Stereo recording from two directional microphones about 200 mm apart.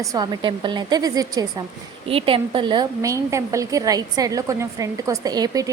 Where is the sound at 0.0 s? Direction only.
20° right (ahead or behind).